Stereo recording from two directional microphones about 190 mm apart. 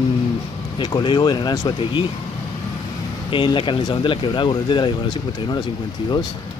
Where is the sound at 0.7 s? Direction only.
25° left (ahead or behind).